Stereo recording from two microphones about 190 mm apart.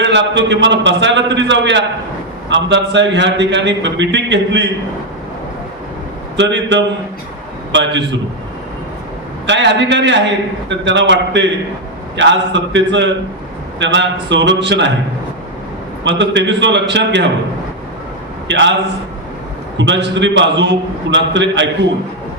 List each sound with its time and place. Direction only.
0.0 s a man's voice: 70° right (ahead or behind)
6.3 s a man's voice: 65° right (ahead or behind)
9.5 s a man's voice: 70° right (ahead or behind)
16.0 s a man's voice: 70° right (ahead or behind)
18.4 s a man's voice: 70° right (ahead or behind)
19.7 s a man's voice: 70° right (ahead or behind)